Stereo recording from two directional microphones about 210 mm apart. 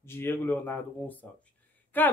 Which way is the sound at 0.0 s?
10° left (ahead or behind).